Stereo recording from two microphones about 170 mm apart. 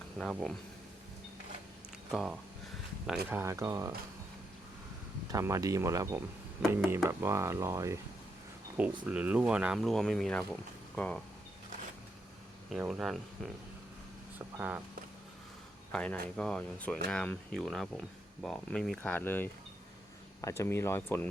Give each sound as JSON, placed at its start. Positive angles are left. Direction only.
{"t": 0.2, "sound": "speech", "side_deg": 0}
{"t": 2.1, "sound": "speech", "side_deg": 0}
{"t": 3.2, "sound": "speech", "side_deg": -15}
{"t": 5.3, "sound": "speech", "side_deg": -20}
{"t": 12.7, "sound": "speech", "side_deg": 0}
{"t": 15.9, "sound": "speech", "side_deg": 5}